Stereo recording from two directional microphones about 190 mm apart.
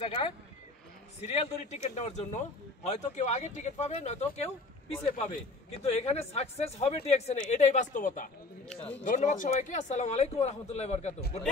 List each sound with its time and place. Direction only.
0.0 s speech: 30° left (ahead or behind)
1.3 s speech: 35° left (ahead or behind)